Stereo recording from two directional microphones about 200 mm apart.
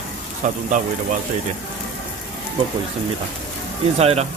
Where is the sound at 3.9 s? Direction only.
30° right (ahead or behind).